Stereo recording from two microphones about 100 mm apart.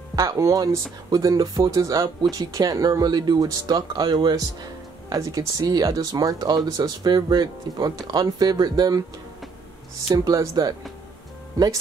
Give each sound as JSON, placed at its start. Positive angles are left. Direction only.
{"t": 0.1, "sound": "speech", "side_deg": -35}
{"t": 10.1, "sound": "speech", "side_deg": -35}